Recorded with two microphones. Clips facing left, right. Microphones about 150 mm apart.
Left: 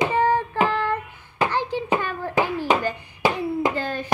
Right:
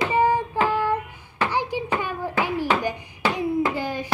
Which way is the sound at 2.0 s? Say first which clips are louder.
Even; 15° right (ahead or behind).